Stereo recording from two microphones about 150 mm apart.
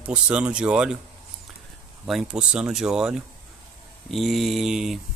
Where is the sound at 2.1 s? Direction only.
5° right (ahead or behind).